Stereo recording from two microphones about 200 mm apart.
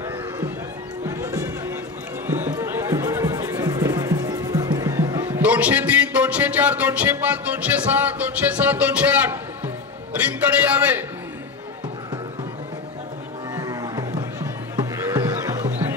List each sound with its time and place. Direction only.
1.0 s music: 15° right (ahead or behind)
10.6 s a man's voice: 10° right (ahead or behind)
13.6 s music: 15° right (ahead or behind)